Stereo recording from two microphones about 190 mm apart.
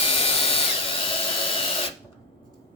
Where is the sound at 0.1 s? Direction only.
30° left (ahead or behind).